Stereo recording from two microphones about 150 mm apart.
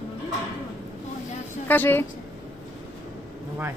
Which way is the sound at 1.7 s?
15° left (ahead or behind).